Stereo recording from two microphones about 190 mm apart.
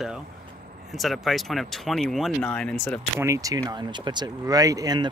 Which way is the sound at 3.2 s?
15° right (ahead or behind).